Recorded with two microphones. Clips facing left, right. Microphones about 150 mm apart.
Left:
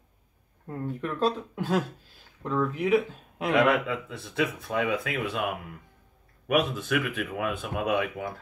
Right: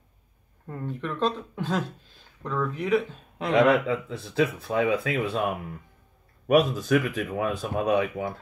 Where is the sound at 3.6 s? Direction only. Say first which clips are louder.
Right 3 dB; 30° right (ahead or behind).